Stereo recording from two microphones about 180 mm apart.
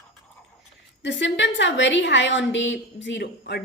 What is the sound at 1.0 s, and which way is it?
A woman's voice, 80° left.